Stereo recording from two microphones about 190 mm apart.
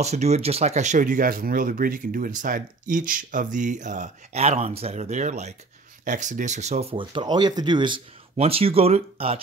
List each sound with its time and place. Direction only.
0.0 s speech: 35° right (ahead or behind)